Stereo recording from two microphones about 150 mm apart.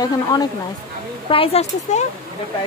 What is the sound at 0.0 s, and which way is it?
Speech, 25° left (ahead or behind).